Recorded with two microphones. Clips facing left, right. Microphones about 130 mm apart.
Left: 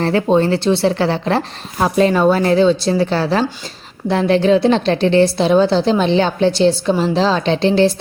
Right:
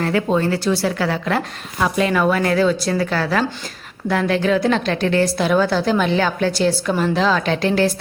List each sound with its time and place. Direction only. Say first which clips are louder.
0.0 s a woman's voice: left 4 dB; 30° left (ahead or behind)